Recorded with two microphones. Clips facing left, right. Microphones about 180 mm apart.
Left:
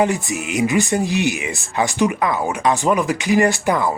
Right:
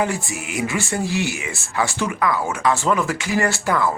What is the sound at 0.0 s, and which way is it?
Speech, 20° left (ahead or behind).